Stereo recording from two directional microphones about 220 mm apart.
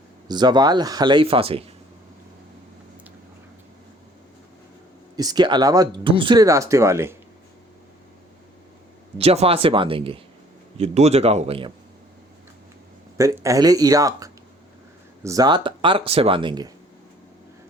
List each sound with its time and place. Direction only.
0.3 s speech: 20° right (ahead or behind)
5.1 s speech: 20° right (ahead or behind)
9.1 s speech: 25° right (ahead or behind)
13.1 s speech: 15° right (ahead or behind)